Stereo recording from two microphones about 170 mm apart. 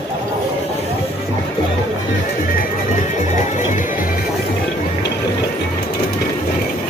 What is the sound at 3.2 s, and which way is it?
Music, 45° left (ahead or behind).